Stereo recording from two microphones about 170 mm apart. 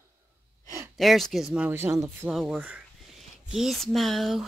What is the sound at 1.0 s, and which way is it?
Speech, centre (ahead or behind).